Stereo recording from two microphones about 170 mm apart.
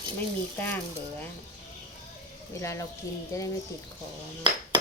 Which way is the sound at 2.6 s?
15° left (ahead or behind).